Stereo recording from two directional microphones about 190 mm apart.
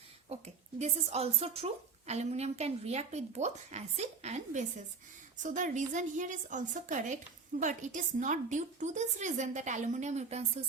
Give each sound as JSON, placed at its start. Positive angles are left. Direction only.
{"t": 0.3, "sound": "a woman's voice", "side_deg": -35}